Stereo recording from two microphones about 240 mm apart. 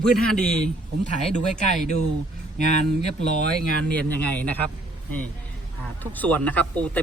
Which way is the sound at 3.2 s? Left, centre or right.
Left.